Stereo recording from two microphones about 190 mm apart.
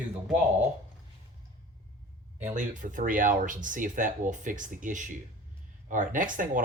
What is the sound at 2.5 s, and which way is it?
Speech, 45° right (ahead or behind).